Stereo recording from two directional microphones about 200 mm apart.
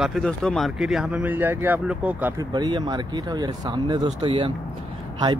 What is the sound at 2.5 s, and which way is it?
Speech, 20° right (ahead or behind).